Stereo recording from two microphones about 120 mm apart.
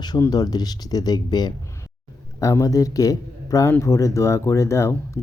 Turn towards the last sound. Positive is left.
turn(degrees=25)  # may be behind; listen again after turning